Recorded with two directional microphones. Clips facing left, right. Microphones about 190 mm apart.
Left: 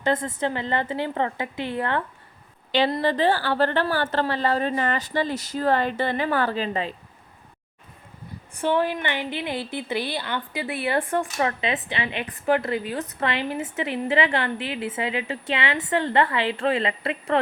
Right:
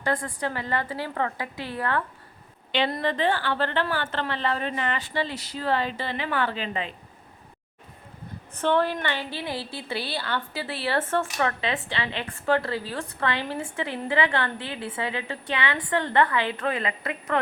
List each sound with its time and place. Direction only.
0.0 s speech: 20° left (ahead or behind)
2.9 s a woman's voice: 35° left (ahead or behind)
8.5 s a woman's voice: 15° left (ahead or behind)